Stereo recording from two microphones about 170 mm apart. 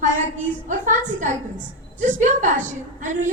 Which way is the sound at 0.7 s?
50° right (ahead or behind).